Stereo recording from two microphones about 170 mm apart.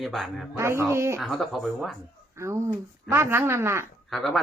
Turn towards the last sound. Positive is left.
turn(degrees=0)  # may be behind; listen again after turning